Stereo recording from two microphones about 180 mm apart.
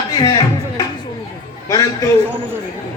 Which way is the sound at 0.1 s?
20° left (ahead or behind).